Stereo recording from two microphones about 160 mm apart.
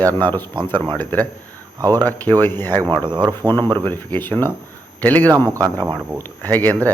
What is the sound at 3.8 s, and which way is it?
A man's voice, 10° left (ahead or behind).